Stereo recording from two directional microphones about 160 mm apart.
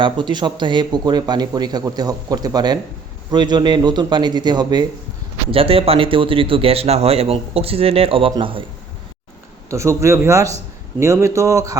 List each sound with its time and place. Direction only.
0.0 s speech: 30° right (ahead or behind)
9.6 s a man's voice: 20° right (ahead or behind)